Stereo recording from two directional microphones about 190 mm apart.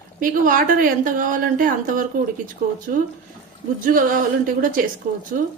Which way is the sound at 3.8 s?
45° right (ahead or behind).